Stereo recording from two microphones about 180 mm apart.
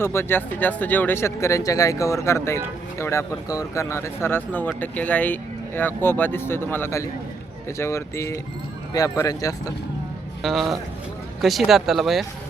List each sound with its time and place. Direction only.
0.0 s speech: 15° left (ahead or behind)
10.4 s speech: centre (ahead or behind)